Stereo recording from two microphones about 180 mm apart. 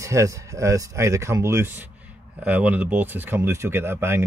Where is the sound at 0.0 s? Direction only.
15° right (ahead or behind).